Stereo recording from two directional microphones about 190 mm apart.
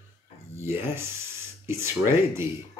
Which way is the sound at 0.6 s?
15° right (ahead or behind).